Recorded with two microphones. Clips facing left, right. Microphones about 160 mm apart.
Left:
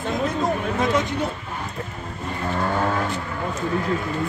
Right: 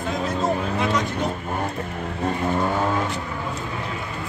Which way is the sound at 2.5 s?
10° right (ahead or behind).